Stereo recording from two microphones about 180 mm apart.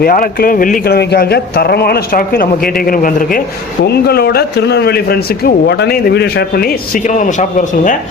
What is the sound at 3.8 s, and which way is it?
A man's voice, 60° left (ahead or behind).